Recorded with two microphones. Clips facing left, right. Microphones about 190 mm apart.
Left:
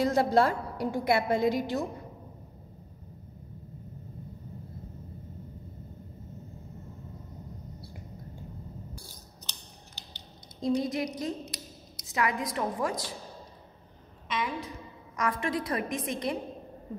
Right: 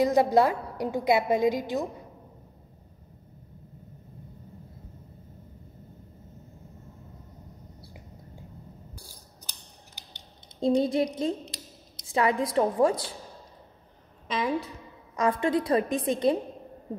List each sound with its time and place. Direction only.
0.0 s a woman's voice: 15° right (ahead or behind)
10.6 s a woman's voice: 30° right (ahead or behind)
14.2 s a woman's voice: 35° right (ahead or behind)